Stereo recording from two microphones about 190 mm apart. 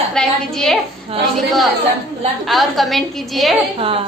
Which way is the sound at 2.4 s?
Centre (ahead or behind).